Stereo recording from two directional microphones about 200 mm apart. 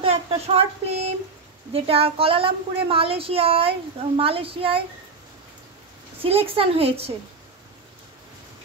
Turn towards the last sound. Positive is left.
turn(degrees=-30)  # may be behind; listen again after turning